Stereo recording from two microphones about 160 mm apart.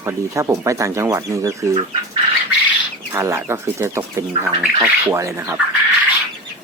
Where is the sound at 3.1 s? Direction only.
15° right (ahead or behind).